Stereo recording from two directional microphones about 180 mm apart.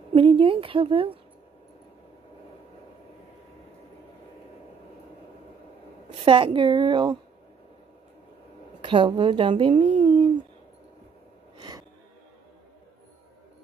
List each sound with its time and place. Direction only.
0.1 s a woman's voice: 30° right (ahead or behind)
6.2 s a woman's voice: 30° right (ahead or behind)
8.8 s a woman's voice: 25° right (ahead or behind)
10.0 s a sound: 25° right (ahead or behind)
11.5 s gasp: 25° right (ahead or behind)